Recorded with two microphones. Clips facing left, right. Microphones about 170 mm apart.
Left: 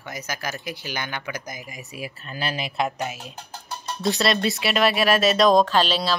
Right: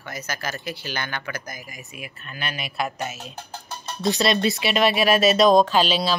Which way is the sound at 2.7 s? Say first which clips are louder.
Left 2 dB; 20° left (ahead or behind).